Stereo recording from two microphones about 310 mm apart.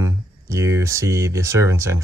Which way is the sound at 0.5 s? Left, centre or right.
Centre.